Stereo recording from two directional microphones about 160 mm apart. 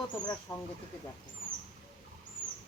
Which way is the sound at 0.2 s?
25° left (ahead or behind).